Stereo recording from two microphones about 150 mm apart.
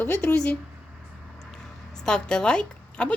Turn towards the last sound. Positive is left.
turn(degrees=5)  # may be behind; listen again after turning